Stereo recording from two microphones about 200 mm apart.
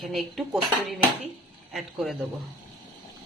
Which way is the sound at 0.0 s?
Centre (ahead or behind).